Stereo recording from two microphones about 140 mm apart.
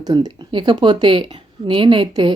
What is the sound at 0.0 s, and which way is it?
Speech, 30° right (ahead or behind).